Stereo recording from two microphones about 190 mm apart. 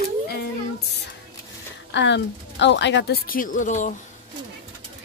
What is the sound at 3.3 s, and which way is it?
Speech, 45° left (ahead or behind).